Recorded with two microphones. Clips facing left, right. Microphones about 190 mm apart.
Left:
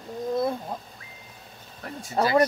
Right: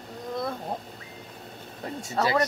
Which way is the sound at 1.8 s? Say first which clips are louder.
Right 3 dB; 20° right (ahead or behind).